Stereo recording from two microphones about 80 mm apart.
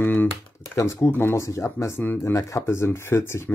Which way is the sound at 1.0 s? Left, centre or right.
Left.